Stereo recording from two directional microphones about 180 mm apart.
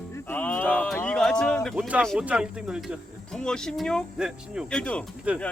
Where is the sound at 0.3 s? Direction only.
10° left (ahead or behind).